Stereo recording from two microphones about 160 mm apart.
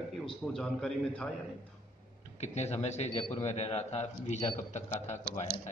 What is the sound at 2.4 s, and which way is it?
A man's voice, 45° left (ahead or behind).